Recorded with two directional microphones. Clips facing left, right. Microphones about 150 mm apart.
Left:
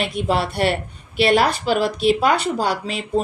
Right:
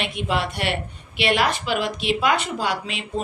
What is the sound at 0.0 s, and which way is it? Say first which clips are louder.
A woman's voice: left 4 dB; 40° left (ahead or behind).